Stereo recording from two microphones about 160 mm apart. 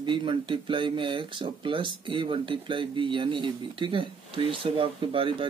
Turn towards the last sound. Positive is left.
turn(degrees=-35)  # may be behind; listen again after turning